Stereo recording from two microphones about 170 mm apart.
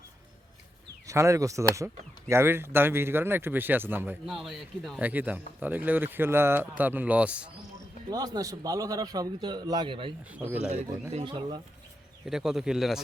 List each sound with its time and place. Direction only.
1.0 s speech: 20° right (ahead or behind)
8.1 s a man's voice: 20° right (ahead or behind)
12.2 s a man's voice: 5° right (ahead or behind)